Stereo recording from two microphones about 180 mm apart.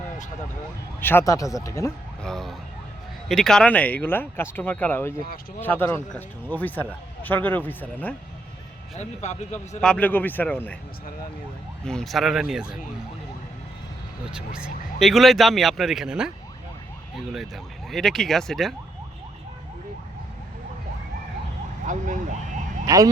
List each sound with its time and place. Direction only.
1.0 s speech: 15° left (ahead or behind)
2.2 s speech: centre (ahead or behind)
9.0 s speech: 40° left (ahead or behind)
9.8 s speech: 5° left (ahead or behind)
11.9 s speech: centre (ahead or behind)
14.3 s speech: 5° right (ahead or behind)
17.9 s speech: centre (ahead or behind)
21.8 s speech: 45° right (ahead or behind)
22.9 s speech: 20° right (ahead or behind)